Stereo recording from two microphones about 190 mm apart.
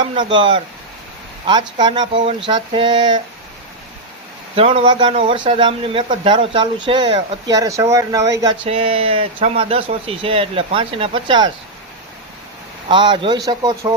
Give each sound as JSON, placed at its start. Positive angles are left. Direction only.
{"t": 0.0, "sound": "a man's voice", "side_deg": -25}
{"t": 4.5, "sound": "a man's voice", "side_deg": -30}
{"t": 8.6, "sound": "a man's voice", "side_deg": -30}
{"t": 12.9, "sound": "a man's voice", "side_deg": -25}